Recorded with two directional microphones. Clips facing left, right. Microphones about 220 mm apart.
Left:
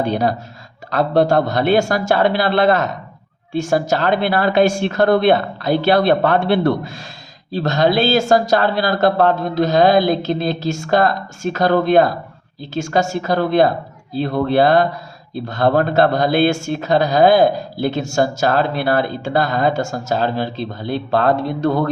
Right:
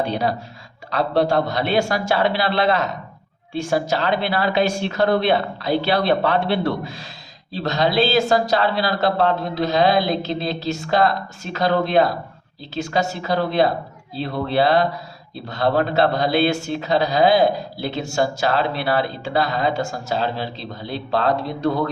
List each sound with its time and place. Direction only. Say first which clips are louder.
0.0 s a man's voice: left 4 dB; 50° left (ahead or behind)